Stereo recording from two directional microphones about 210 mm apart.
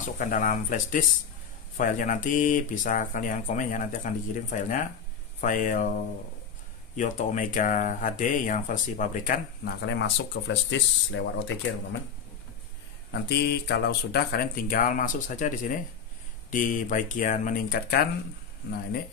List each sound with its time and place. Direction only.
0.0 s speech: 40° left (ahead or behind)
7.0 s speech: 35° left (ahead or behind); by 11.5 s 60° left (ahead or behind)
13.1 s speech: 50° left (ahead or behind)